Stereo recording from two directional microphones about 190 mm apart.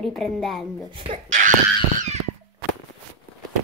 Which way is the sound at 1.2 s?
40° right (ahead or behind).